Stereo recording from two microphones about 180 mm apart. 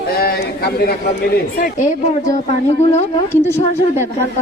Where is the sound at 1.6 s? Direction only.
45° left (ahead or behind).